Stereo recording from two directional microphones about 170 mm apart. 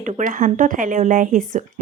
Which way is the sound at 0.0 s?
50° right (ahead or behind).